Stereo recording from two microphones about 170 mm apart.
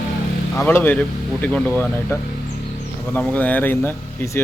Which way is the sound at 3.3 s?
10° left (ahead or behind).